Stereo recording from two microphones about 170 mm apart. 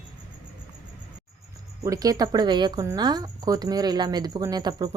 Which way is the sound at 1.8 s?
20° right (ahead or behind).